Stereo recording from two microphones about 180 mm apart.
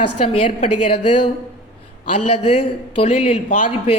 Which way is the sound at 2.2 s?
35° left (ahead or behind).